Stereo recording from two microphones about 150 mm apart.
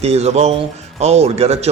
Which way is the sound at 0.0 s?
45° right (ahead or behind).